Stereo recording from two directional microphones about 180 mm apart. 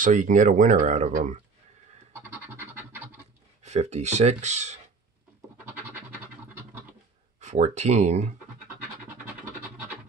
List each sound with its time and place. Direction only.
0.0 s speech: 45° right (ahead or behind)
2.1 s scratch: 10° right (ahead or behind)
3.6 s speech: 40° right (ahead or behind)
7.3 s speech: 40° right (ahead or behind)